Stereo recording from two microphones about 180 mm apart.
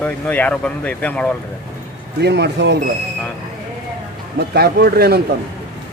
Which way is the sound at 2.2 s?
70° right (ahead or behind).